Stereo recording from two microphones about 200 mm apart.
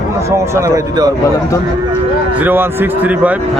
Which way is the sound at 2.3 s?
10° right (ahead or behind).